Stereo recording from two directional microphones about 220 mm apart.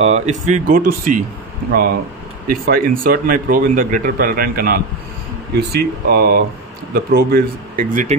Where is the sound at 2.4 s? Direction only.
40° right (ahead or behind).